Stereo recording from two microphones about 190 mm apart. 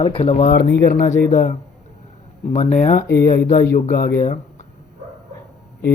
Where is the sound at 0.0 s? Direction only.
30° left (ahead or behind).